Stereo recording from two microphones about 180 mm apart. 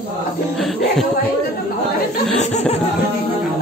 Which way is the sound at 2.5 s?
35° left (ahead or behind).